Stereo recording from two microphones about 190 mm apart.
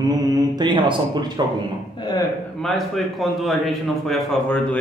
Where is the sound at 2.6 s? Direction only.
Centre (ahead or behind).